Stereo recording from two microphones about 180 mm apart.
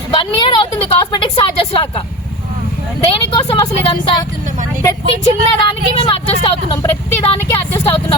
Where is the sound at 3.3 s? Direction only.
30° left (ahead or behind).